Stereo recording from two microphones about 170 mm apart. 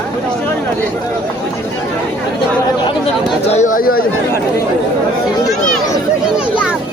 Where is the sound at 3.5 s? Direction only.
45° left (ahead or behind).